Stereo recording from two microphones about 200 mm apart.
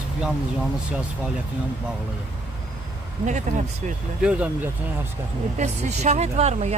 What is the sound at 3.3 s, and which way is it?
Speech, 35° right (ahead or behind).